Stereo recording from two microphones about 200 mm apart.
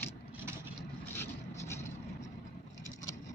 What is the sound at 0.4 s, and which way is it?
Vehicle, 10° right (ahead or behind).